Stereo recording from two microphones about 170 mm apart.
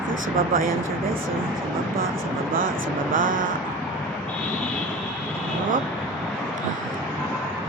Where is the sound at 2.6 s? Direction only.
55° right (ahead or behind).